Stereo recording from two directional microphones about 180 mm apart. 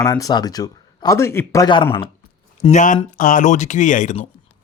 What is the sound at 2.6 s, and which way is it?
A man's voice, 40° left (ahead or behind).